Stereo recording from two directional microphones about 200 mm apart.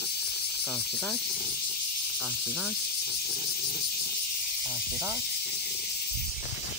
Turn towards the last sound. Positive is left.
turn(degrees=-5)  # may be behind; listen again after turning